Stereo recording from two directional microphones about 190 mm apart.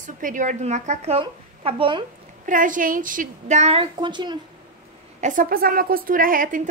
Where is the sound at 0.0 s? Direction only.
40° right (ahead or behind).